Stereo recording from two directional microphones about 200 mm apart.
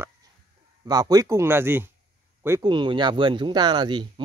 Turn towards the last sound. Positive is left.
turn(degrees=-25)  # may be behind; listen again after turning